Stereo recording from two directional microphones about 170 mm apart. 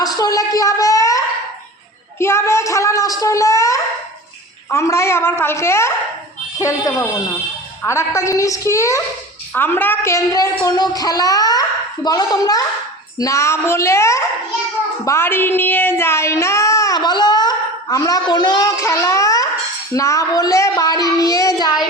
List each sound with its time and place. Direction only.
0.0 s a woman's voice: 20° left (ahead or behind)
15.0 s child singing: 15° left (ahead or behind)
19.9 s a woman's voice: 20° left (ahead or behind)